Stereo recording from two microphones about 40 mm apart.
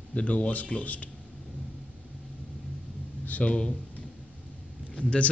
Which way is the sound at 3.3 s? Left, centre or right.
Left.